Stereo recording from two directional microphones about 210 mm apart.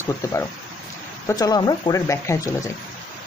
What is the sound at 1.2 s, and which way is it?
Speech, 15° left (ahead or behind).